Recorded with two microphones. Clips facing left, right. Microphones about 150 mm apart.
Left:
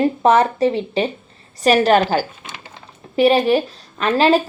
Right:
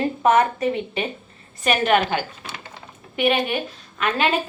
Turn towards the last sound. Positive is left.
turn(degrees=35)  # may be behind; listen again after turning